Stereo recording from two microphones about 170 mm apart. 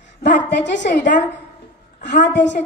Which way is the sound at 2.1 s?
90° left.